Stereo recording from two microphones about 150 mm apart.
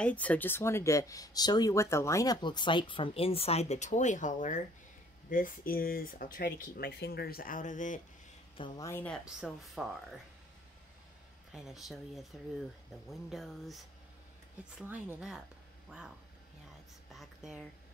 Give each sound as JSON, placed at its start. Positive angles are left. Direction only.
{"t": 0.0, "sound": "speech", "side_deg": 10}
{"t": 5.3, "sound": "speech", "side_deg": 70}
{"t": 8.5, "sound": "speech", "side_deg": 30}
{"t": 8.8, "sound": "speech", "side_deg": 15}
{"t": 9.2, "sound": "speech", "side_deg": -5}
{"t": 11.5, "sound": "speech", "side_deg": 0}
{"t": 17.1, "sound": "a sound", "side_deg": 0}